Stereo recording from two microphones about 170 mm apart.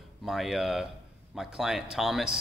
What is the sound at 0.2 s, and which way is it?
A man's voice, centre (ahead or behind).